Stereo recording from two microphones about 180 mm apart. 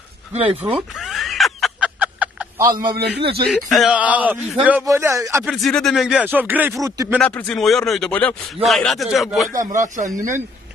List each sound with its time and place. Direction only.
0.7 s snicker: centre (ahead or behind)
2.7 s a man's voice: 55° right (ahead or behind)
3.4 s a man's voice: centre (ahead or behind); by 5.4 s 15° right (ahead or behind)
5.4 s speech: centre (ahead or behind); by 7.2 s 15° right (ahead or behind)
7.2 s a man's voice: 5° left (ahead or behind)
9.5 s speech: 45° right (ahead or behind)